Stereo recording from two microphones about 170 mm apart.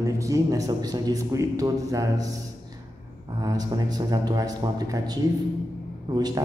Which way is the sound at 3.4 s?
20° right (ahead or behind).